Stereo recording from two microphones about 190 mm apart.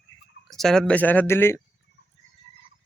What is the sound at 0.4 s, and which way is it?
Speech, centre (ahead or behind).